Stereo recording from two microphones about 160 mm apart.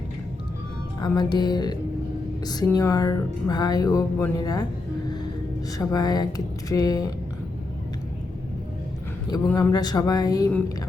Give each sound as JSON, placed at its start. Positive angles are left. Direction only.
{"t": 1.0, "sound": "speech", "side_deg": 25}
{"t": 9.3, "sound": "speech", "side_deg": 20}